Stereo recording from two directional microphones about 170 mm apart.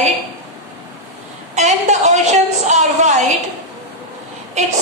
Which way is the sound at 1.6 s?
40° right (ahead or behind).